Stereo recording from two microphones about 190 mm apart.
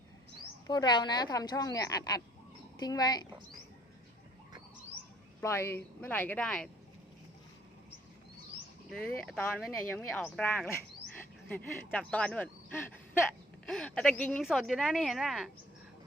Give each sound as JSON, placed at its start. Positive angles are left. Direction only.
{"t": 0.7, "sound": "a woman's voice", "side_deg": 20}
{"t": 5.4, "sound": "speech", "side_deg": 15}
{"t": 8.9, "sound": "speech", "side_deg": 5}